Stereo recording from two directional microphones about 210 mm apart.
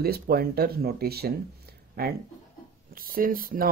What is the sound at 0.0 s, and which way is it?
Speech, 45° right (ahead or behind).